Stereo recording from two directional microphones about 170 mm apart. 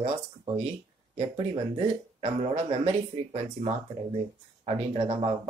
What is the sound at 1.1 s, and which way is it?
Speech, 35° right (ahead or behind).